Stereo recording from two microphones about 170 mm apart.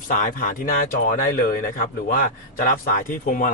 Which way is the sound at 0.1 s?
50° left (ahead or behind).